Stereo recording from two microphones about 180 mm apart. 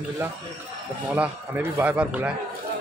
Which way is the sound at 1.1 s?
10° right (ahead or behind).